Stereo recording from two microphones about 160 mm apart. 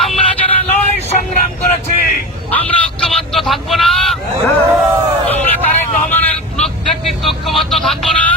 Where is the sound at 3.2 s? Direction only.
Centre (ahead or behind).